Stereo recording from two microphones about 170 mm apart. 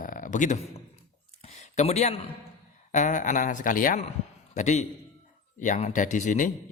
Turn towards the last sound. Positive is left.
turn(degrees=45)  # may be behind; listen again after turning